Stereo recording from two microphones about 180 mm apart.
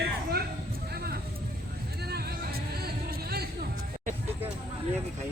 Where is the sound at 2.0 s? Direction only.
60° right (ahead or behind).